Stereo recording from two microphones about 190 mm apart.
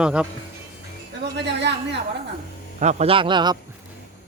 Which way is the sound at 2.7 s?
35° right (ahead or behind).